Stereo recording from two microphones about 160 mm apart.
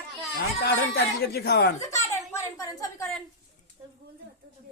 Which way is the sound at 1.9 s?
20° left (ahead or behind).